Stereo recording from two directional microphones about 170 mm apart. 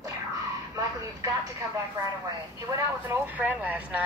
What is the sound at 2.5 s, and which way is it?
Vehicle, 20° right (ahead or behind).